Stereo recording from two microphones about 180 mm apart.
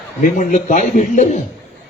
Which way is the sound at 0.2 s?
45° left (ahead or behind).